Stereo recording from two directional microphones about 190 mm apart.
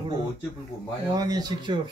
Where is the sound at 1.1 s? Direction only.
20° right (ahead or behind).